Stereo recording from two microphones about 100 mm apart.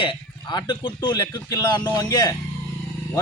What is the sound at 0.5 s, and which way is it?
Speech, 55° left (ahead or behind).